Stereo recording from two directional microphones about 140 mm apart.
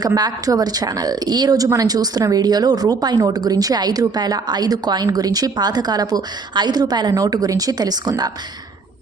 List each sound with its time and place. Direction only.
0.0 s a woman's voice: 25° right (ahead or behind)